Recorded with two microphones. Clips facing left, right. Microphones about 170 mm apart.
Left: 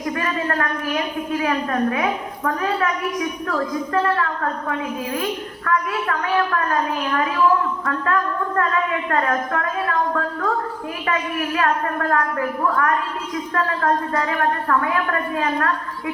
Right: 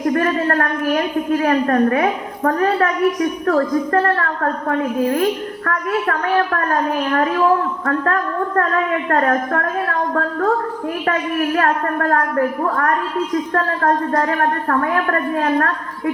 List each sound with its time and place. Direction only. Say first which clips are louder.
0.0 s a woman's voice: right 7 dB; 50° right (ahead or behind)
11.0 s a woman's voice: right 4 dB; 50° right (ahead or behind)